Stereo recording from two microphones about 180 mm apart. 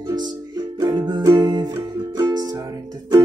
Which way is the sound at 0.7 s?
25° right (ahead or behind).